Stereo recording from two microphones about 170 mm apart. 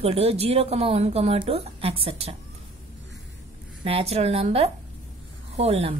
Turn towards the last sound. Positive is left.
turn(degrees=-35)  # may be behind; listen again after turning